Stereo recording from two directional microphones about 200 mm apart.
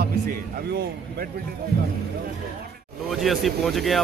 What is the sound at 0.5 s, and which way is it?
Speech, 45° right (ahead or behind).